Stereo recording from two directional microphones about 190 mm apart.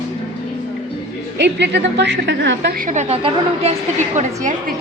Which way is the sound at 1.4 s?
65° right (ahead or behind).